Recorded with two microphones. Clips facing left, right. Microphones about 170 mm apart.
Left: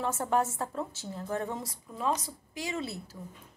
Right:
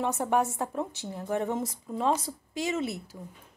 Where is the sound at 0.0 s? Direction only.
15° right (ahead or behind).